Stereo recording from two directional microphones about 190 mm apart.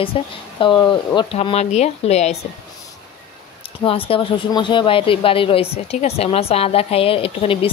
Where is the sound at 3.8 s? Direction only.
30° left (ahead or behind).